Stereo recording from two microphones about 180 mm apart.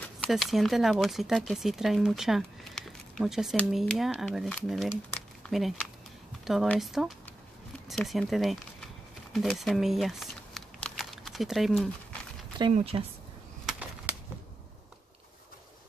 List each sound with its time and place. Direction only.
0.0 s speech: 5° left (ahead or behind)
9.3 s crumpling: centre (ahead or behind)
12.7 s speech: 35° right (ahead or behind)
13.7 s a sound: 5° right (ahead or behind)